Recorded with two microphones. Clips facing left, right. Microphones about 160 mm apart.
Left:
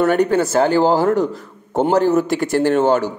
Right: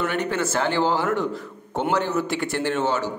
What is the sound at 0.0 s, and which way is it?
Speech, 40° left (ahead or behind).